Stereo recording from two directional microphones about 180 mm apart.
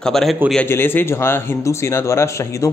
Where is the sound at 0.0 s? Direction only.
Centre (ahead or behind).